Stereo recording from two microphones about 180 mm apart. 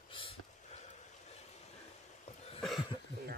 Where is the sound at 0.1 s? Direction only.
30° left (ahead or behind).